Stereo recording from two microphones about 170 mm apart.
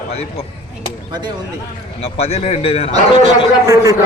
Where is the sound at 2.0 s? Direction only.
35° left (ahead or behind).